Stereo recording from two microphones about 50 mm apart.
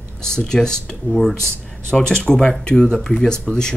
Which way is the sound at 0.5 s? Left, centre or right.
Centre.